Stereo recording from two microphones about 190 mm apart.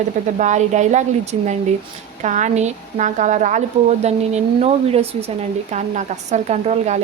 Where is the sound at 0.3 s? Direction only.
40° right (ahead or behind).